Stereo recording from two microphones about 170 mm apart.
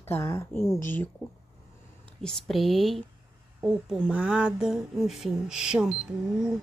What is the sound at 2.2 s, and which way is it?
Speech, centre (ahead or behind).